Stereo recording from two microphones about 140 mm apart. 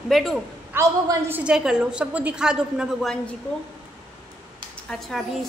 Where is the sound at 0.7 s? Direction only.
15° right (ahead or behind).